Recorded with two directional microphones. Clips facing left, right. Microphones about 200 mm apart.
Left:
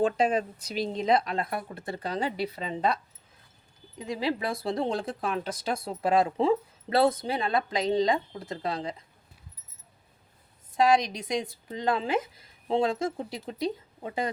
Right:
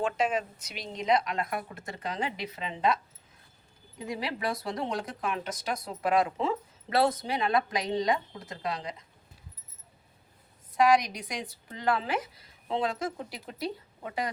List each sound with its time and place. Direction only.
0.0 s speech: 35° left (ahead or behind)
3.9 s speech: 25° left (ahead or behind)
10.8 s speech: 25° left (ahead or behind)